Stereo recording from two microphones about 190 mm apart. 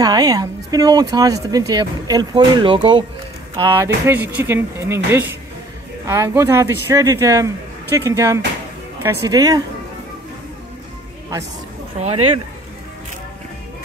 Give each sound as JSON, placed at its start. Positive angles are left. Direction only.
{"t": 0.0, "sound": "speech", "side_deg": -20}